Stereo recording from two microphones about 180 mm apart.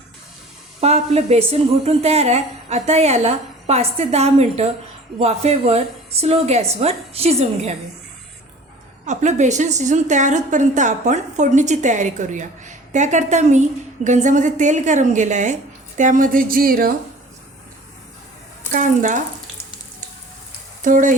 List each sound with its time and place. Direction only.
0.8 s a woman's voice: 35° right (ahead or behind)
9.0 s a woman's voice: 40° right (ahead or behind)
18.7 s a woman's voice: 45° right (ahead or behind)
20.8 s a woman's voice: 45° right (ahead or behind)